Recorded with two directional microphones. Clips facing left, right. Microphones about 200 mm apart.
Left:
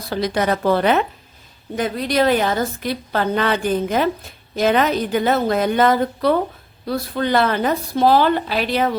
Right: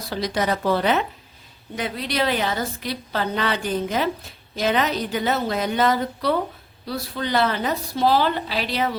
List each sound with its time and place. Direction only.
0.1 s a woman's voice: 55° left (ahead or behind)